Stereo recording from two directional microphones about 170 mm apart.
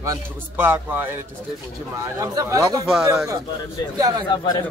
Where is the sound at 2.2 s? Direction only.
20° right (ahead or behind).